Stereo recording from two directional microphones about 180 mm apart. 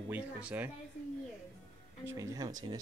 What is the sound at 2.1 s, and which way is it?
Speech, 20° right (ahead or behind).